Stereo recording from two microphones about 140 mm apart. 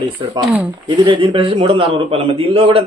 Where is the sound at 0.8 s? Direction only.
35° right (ahead or behind).